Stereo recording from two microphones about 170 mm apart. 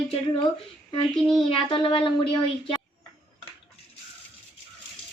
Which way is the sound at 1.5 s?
30° left (ahead or behind).